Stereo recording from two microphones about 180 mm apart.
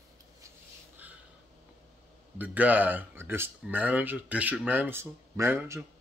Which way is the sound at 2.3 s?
10° right (ahead or behind).